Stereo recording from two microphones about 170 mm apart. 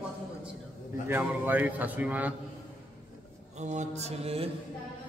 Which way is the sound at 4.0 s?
40° right (ahead or behind).